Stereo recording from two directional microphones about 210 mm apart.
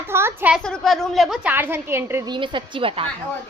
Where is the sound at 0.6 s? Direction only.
Centre (ahead or behind); by 3.0 s 25° right (ahead or behind).